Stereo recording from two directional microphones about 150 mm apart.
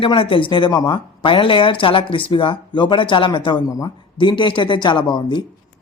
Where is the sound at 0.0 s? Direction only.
35° left (ahead or behind).